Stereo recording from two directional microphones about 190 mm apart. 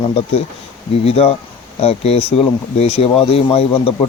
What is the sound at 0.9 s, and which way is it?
Speech, 30° left (ahead or behind).